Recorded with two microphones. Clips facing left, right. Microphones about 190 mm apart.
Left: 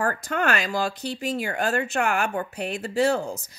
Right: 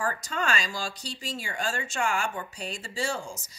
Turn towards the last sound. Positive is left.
turn(degrees=60)  # may be behind; listen again after turning